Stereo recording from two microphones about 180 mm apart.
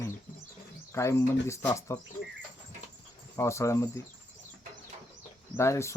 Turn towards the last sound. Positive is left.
turn(degrees=15)  # may be behind; listen again after turning